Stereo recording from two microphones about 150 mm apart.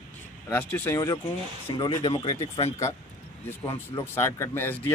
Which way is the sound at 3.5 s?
20° left (ahead or behind).